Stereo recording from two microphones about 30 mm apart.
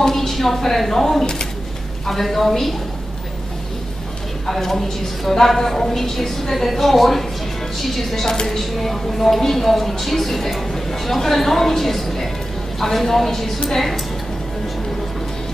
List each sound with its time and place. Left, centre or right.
0.0 s a woman's voice: centre
1.2 s speech: left
2.0 s speech: centre
4.5 s speech: centre